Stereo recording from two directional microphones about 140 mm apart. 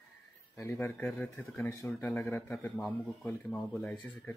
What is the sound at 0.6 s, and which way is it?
Speech, 15° left (ahead or behind).